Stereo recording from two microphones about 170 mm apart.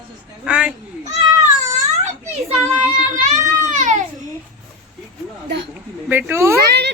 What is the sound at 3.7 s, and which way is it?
Baby cry, 45° right (ahead or behind).